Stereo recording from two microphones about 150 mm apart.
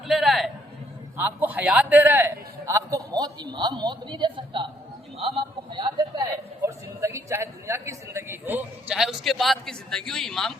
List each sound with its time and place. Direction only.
0.1 s a sound: centre (ahead or behind)
1.1 s a man's voice: 10° right (ahead or behind); by 4.6 s 30° right (ahead or behind)
5.7 s speech: 30° right (ahead or behind)
6.6 s a man's voice: 20° right (ahead or behind); by 10.5 s centre (ahead or behind)